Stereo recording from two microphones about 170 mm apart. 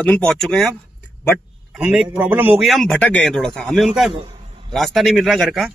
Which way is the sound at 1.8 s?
5° right (ahead or behind).